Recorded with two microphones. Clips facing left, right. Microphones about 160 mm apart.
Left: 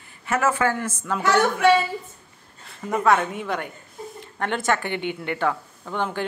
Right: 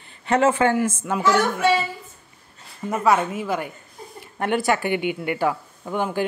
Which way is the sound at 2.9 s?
Centre (ahead or behind).